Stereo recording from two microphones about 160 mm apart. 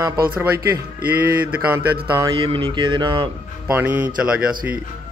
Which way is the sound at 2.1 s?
20° right (ahead or behind).